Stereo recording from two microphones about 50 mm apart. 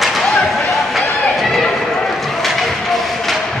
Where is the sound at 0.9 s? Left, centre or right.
Centre.